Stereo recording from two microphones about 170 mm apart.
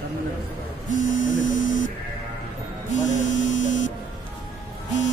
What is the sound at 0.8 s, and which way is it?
Speech, 50° left (ahead or behind).